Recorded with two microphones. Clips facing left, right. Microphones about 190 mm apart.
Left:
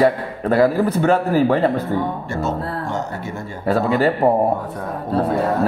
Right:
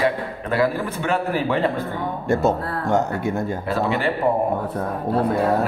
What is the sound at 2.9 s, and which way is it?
Speech, 55° right (ahead or behind).